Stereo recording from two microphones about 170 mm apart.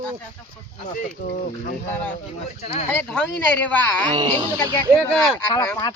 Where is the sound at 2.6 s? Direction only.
40° left (ahead or behind).